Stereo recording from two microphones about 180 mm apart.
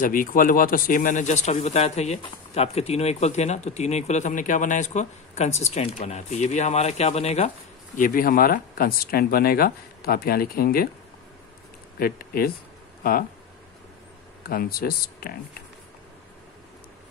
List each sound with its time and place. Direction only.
0.0 s speech: 50° left (ahead or behind)
12.0 s speech: 55° left (ahead or behind)
14.5 s speech: 55° left (ahead or behind)